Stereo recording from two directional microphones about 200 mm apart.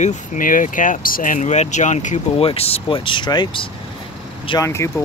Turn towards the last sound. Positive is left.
turn(degrees=15)  # may be behind; listen again after turning